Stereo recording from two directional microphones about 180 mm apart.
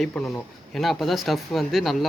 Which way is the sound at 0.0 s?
5° left (ahead or behind).